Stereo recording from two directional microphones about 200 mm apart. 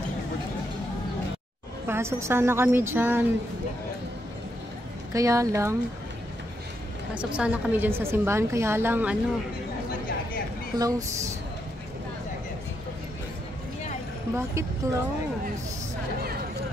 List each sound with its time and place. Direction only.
1.9 s a woman's voice: 15° right (ahead or behind)
5.1 s a woman's voice: 15° right (ahead or behind)
7.2 s a woman's voice: 5° right (ahead or behind)
10.7 s a woman's voice: 20° right (ahead or behind)
14.3 s a woman's voice: 15° right (ahead or behind)